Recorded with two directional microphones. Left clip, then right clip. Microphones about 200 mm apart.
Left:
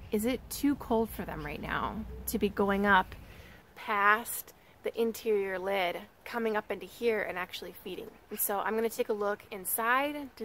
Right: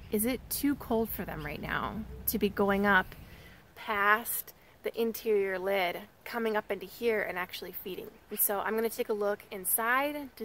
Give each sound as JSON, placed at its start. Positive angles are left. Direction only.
{"t": 0.1, "sound": "a woman's voice", "side_deg": -5}